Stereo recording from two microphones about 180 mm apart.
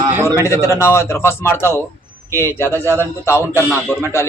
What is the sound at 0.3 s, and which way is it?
A man's voice, 15° left (ahead or behind).